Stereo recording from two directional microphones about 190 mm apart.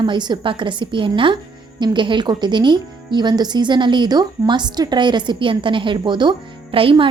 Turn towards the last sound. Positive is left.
turn(degrees=-30)  # may be behind; listen again after turning